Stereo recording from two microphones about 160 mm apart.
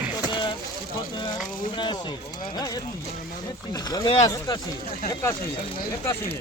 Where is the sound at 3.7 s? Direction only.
25° left (ahead or behind).